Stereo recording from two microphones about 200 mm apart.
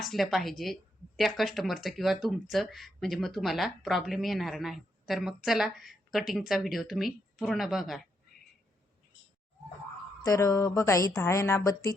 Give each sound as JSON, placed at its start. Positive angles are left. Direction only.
{"t": 0.0, "sound": "a woman's voice", "side_deg": 0}
{"t": 10.2, "sound": "a woman's voice", "side_deg": 15}